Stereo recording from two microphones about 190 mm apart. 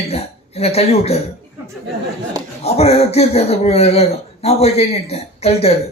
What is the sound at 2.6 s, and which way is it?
Speech, 35° left (ahead or behind).